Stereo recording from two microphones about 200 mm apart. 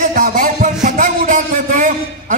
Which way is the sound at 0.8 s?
40° right (ahead or behind).